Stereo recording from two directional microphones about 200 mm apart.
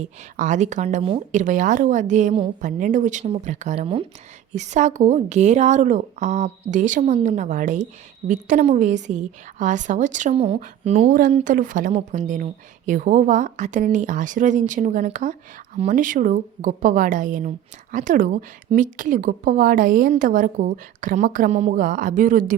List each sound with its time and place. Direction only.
0.0 s a woman's voice: 40° right (ahead or behind)